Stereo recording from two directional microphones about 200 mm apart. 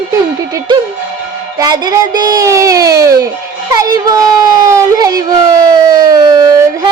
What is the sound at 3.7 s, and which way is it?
A child's voice, 20° right (ahead or behind).